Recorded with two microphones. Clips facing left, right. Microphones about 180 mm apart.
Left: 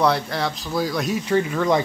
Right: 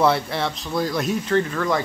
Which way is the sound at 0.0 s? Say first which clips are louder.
Right 1 dB; centre (ahead or behind).